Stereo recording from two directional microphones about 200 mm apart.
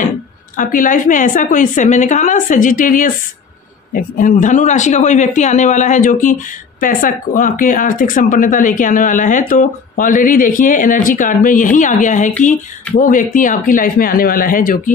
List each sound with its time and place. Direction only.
0.6 s speech: 40° left (ahead or behind)